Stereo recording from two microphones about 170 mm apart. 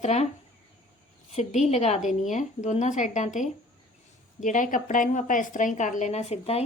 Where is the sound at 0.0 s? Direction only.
40° left (ahead or behind).